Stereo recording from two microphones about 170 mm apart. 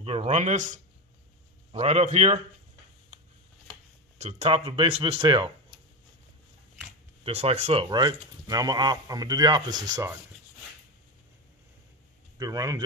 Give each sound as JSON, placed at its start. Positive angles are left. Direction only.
{"t": 0.0, "sound": "speech", "side_deg": -40}
{"t": 4.2, "sound": "speech", "side_deg": -40}
{"t": 7.2, "sound": "speech", "side_deg": -35}
{"t": 12.4, "sound": "speech", "side_deg": -20}